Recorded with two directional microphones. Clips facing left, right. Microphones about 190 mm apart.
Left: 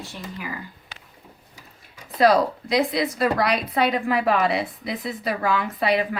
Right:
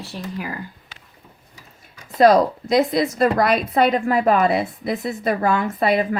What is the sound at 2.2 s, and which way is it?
A woman's voice, 45° right (ahead or behind).